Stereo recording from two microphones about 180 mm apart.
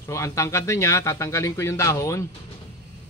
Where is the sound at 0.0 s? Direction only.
15° left (ahead or behind).